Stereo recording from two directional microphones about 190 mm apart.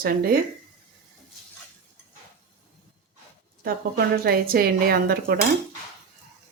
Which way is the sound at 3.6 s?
55° right (ahead or behind).